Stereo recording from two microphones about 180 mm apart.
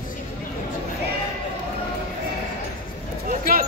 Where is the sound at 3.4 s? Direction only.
50° right (ahead or behind).